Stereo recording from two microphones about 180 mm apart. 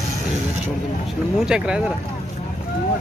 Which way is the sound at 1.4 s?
5° right (ahead or behind).